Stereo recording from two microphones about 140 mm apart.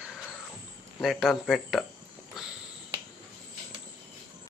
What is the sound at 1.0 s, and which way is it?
Speech, centre (ahead or behind).